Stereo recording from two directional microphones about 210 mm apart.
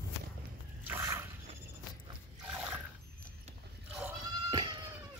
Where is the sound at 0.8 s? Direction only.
10° right (ahead or behind).